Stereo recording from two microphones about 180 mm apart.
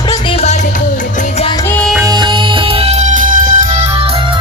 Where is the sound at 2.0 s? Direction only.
20° right (ahead or behind); by 3.9 s 50° right (ahead or behind).